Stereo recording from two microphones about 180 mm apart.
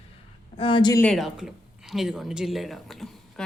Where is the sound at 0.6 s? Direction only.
30° left (ahead or behind).